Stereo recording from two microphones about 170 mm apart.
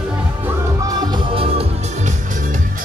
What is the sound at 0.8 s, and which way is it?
Music, 20° right (ahead or behind).